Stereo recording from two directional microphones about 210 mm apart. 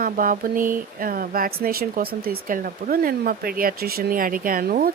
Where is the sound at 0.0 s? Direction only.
40° right (ahead or behind).